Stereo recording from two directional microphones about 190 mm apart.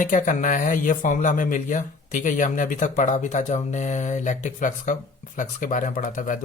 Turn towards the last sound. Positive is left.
turn(degrees=40)  # may be behind; listen again after turning